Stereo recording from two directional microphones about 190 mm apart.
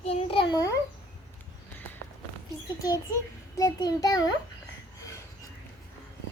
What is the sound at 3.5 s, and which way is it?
Speech, 20° left (ahead or behind).